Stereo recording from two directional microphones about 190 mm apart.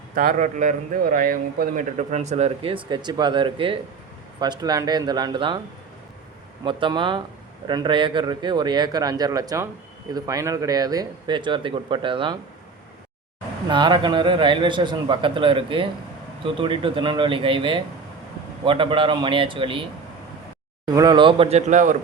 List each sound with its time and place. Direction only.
0.1 s a man's voice: 45° right (ahead or behind); by 5.5 s 25° right (ahead or behind)
6.7 s speech: 25° right (ahead or behind)
13.7 s speech: 25° right (ahead or behind)
20.8 s speech: 20° right (ahead or behind); by 21.9 s 40° right (ahead or behind)